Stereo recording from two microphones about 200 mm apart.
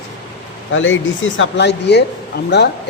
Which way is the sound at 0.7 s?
75° left (ahead or behind).